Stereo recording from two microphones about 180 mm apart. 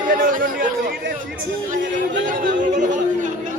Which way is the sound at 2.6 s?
45° right (ahead or behind).